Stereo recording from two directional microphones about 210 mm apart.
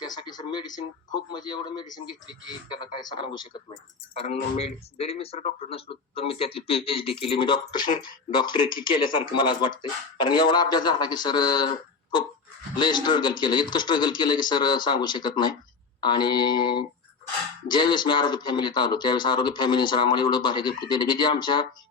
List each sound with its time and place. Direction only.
0.0 s speech: 20° left (ahead or behind)